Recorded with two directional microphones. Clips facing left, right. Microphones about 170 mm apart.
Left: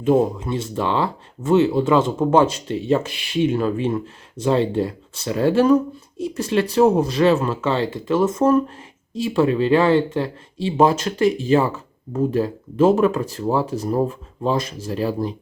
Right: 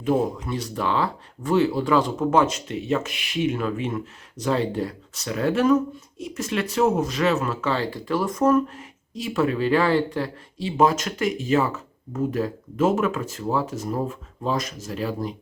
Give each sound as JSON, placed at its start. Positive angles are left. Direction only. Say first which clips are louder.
{"t": 0.0, "sound": "speech", "louder": "left 5 dB", "side_deg": 25}